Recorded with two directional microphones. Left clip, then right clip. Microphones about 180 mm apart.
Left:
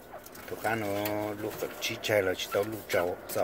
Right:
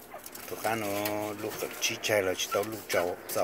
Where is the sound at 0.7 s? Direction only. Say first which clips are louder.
Even; 10° right (ahead or behind).